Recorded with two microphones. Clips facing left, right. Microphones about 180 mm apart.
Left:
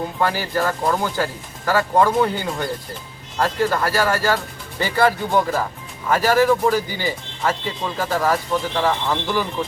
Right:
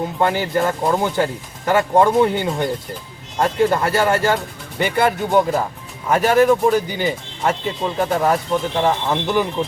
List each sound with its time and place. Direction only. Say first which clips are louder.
0.2 s speech: right 3 dB; 20° right (ahead or behind)